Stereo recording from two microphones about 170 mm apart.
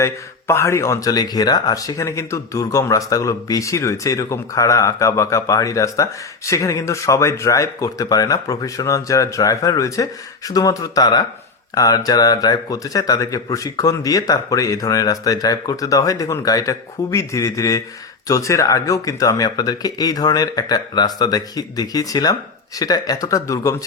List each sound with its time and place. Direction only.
0.0 s speech: 15° left (ahead or behind)